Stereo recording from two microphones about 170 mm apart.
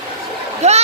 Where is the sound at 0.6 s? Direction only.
40° right (ahead or behind).